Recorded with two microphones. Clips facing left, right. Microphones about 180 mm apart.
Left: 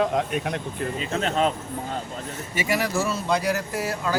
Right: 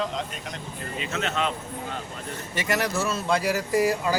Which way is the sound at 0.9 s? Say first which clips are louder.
Left 3 dB; 35° left (ahead or behind).